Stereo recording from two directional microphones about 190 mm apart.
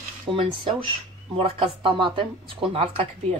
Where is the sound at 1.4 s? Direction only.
30° right (ahead or behind).